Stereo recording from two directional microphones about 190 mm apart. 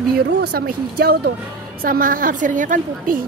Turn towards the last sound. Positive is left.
turn(degrees=-45)  # may be behind; listen again after turning